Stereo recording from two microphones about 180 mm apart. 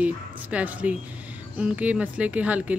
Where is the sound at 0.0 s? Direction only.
10° right (ahead or behind).